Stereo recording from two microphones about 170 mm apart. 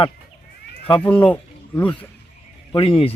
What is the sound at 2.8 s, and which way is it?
Speech, 35° left (ahead or behind).